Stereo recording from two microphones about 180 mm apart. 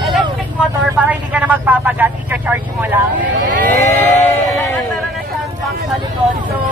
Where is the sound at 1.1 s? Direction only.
10° right (ahead or behind).